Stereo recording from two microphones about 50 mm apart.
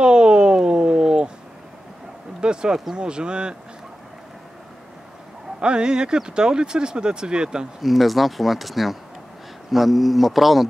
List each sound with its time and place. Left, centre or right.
0.0 s a sound: centre
2.4 s speech: centre
5.6 s speech: centre
7.8 s speech: centre